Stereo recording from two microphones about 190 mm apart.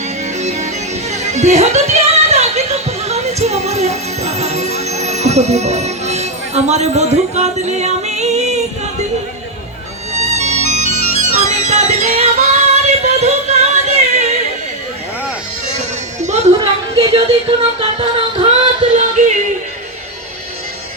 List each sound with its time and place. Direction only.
0.3 s music: 35° right (ahead or behind)
10.2 s music: 35° right (ahead or behind)
16.2 s a sound: 35° right (ahead or behind)
16.9 s music: 35° right (ahead or behind)